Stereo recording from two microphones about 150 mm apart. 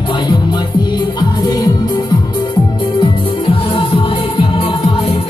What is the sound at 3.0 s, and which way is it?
Music, 35° left (ahead or behind).